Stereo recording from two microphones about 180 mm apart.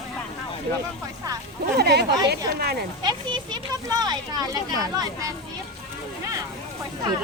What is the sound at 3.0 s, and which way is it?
Speech, 25° right (ahead or behind).